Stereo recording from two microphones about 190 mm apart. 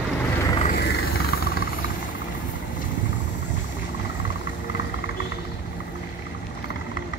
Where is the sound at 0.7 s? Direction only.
60° left (ahead or behind).